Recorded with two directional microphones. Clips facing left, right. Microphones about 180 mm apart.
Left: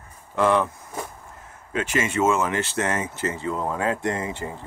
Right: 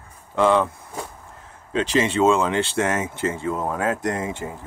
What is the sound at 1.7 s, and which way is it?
Speech, 25° right (ahead or behind).